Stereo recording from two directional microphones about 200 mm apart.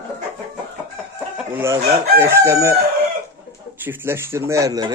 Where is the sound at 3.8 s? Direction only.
10° right (ahead or behind).